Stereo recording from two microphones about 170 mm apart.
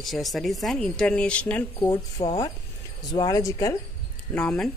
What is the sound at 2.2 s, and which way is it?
Speech, 35° left (ahead or behind).